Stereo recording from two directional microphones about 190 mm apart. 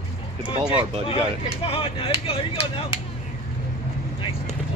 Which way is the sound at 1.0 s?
30° left (ahead or behind).